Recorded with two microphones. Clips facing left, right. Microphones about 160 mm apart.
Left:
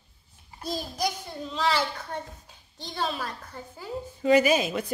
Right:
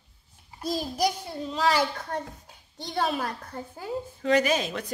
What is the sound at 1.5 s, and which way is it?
Speech, 40° right (ahead or behind).